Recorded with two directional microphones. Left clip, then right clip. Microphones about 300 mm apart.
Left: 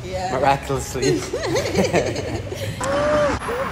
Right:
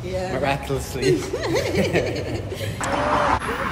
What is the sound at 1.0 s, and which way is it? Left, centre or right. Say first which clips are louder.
Speech: even; centre.